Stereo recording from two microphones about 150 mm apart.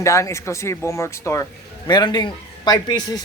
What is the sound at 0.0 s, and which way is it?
A woman's voice, 20° left (ahead or behind).